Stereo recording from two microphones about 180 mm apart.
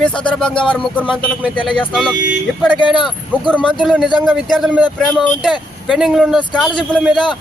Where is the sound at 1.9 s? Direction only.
Centre (ahead or behind).